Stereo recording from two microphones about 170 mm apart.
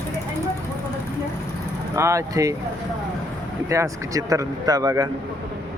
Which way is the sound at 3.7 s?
20° right (ahead or behind).